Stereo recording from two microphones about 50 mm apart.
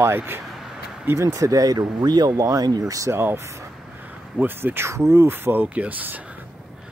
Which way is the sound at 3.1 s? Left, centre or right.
Right.